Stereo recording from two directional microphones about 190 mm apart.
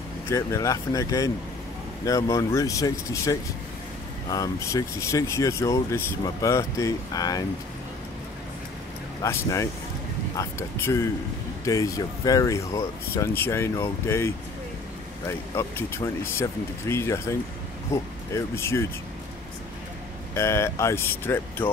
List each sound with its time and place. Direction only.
0.3 s speech: 15° left (ahead or behind)
9.2 s speech: 15° left (ahead or behind)
20.3 s speech: 15° left (ahead or behind)